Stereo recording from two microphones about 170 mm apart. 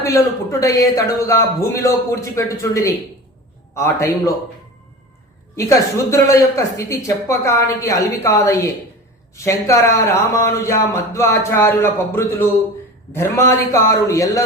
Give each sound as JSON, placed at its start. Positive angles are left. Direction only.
{"t": 0.0, "sound": "speech", "side_deg": 20}
{"t": 5.5, "sound": "a man's voice", "side_deg": 15}